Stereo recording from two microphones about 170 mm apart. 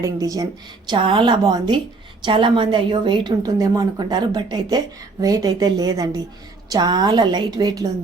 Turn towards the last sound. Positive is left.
turn(degrees=-25)  # may be behind; listen again after turning